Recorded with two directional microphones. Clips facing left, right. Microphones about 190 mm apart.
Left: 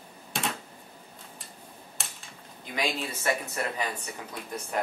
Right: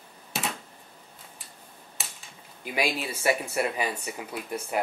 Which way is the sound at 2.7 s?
10° right (ahead or behind).